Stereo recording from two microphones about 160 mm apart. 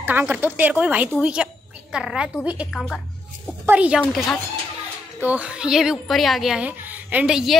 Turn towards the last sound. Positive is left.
turn(degrees=-5)  # may be behind; listen again after turning